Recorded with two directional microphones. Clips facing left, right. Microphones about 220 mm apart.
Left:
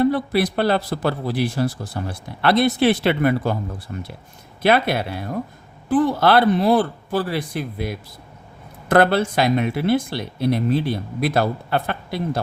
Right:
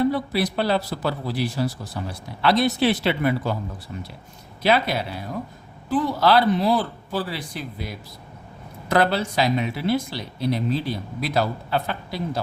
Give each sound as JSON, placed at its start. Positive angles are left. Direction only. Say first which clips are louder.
{"t": 0.0, "sound": "speech", "louder": "left 3 dB", "side_deg": 55}